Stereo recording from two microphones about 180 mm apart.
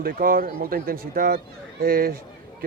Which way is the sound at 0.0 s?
55° right (ahead or behind).